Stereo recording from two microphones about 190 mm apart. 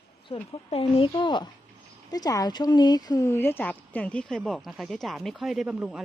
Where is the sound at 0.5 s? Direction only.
30° left (ahead or behind); by 6.0 s 5° right (ahead or behind).